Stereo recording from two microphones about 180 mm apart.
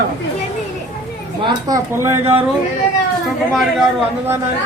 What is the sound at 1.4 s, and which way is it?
Speech, 20° right (ahead or behind).